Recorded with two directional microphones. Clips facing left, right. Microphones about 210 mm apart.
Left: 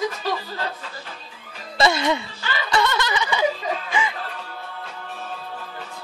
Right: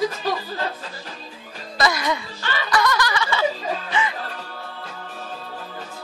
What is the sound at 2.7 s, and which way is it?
Snicker, 25° left (ahead or behind).